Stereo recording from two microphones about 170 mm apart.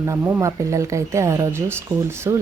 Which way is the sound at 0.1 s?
20° right (ahead or behind).